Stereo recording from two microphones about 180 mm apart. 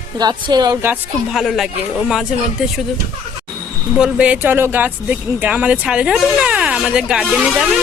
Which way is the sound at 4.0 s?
5° right (ahead or behind).